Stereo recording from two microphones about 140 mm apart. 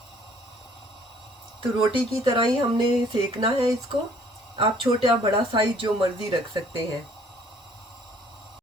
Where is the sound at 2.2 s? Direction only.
35° right (ahead or behind).